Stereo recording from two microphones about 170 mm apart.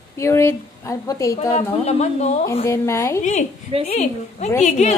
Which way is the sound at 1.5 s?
35° left (ahead or behind).